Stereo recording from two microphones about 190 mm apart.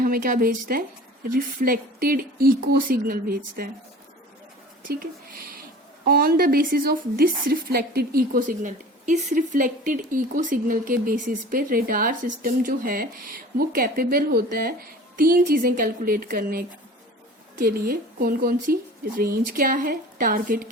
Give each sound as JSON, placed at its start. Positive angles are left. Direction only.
{"t": 0.0, "sound": "a woman's voice", "side_deg": -45}
{"t": 6.1, "sound": "a woman's voice", "side_deg": -50}